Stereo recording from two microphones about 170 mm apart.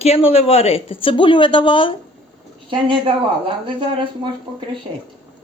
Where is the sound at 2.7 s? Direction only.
30° right (ahead or behind).